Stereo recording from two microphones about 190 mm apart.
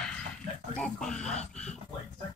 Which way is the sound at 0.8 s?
5° left (ahead or behind).